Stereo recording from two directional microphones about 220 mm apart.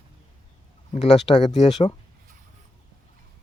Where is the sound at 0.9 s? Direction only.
30° left (ahead or behind).